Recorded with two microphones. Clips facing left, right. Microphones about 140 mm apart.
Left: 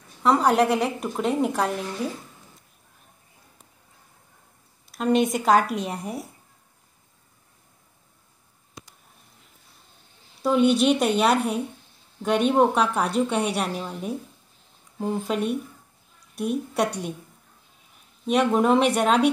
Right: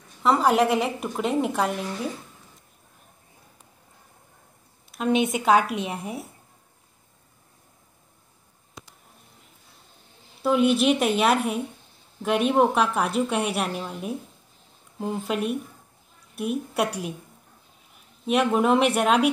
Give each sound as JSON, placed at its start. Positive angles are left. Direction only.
{"t": 0.2, "sound": "a woman's voice", "side_deg": 0}
{"t": 4.9, "sound": "a woman's voice", "side_deg": 0}
{"t": 10.4, "sound": "a woman's voice", "side_deg": -5}
{"t": 18.2, "sound": "a woman's voice", "side_deg": -5}